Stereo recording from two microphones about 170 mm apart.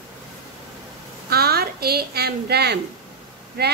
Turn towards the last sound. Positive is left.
turn(degrees=-65)  # may be behind; listen again after turning